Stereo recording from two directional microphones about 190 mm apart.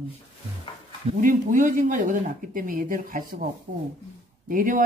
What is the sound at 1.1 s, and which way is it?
Speech, 45° right (ahead or behind).